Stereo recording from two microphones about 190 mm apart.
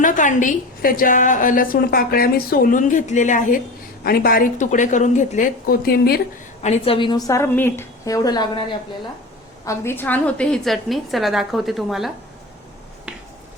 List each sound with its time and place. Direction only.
0.0 s a woman's voice: 45° left (ahead or behind)
6.6 s a woman's voice: 35° left (ahead or behind)
7.3 s a woman's voice: 15° left (ahead or behind)
9.6 s a woman's voice: 10° left (ahead or behind)